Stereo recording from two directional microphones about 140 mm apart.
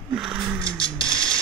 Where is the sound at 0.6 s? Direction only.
5° left (ahead or behind).